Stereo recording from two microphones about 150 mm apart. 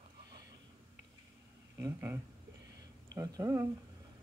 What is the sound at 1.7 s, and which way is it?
Speech, 15° right (ahead or behind).